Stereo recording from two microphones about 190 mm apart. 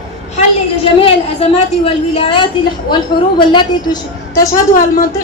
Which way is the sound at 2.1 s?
25° left (ahead or behind).